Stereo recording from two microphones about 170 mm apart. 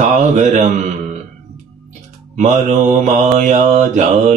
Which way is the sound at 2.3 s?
45° right (ahead or behind).